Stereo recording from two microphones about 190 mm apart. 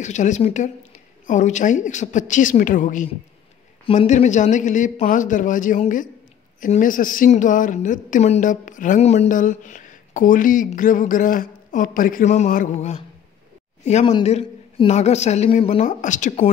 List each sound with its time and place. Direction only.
0.0 s a woman's voice: 40° left (ahead or behind)
3.8 s a woman's voice: 30° left (ahead or behind)